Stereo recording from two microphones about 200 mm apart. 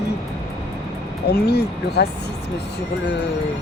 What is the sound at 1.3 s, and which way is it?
Speech, 55° left (ahead or behind).